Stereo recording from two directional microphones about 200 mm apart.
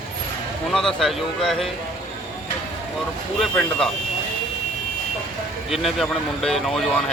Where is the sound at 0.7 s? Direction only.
Centre (ahead or behind).